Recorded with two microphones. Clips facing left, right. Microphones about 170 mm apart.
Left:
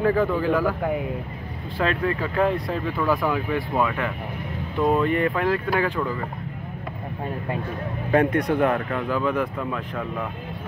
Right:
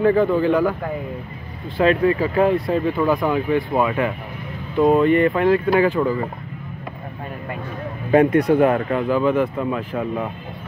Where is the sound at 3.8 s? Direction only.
10° right (ahead or behind).